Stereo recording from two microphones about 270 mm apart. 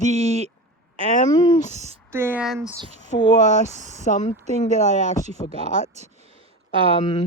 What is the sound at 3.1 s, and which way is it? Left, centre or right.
Speech, centre.